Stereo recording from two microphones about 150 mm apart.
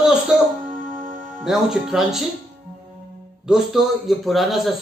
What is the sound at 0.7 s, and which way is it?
Music, 60° right (ahead or behind).